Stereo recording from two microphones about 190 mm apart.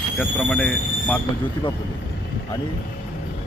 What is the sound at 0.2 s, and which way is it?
Speech, 5° left (ahead or behind).